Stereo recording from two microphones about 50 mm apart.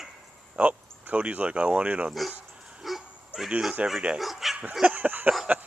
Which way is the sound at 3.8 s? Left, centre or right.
Right.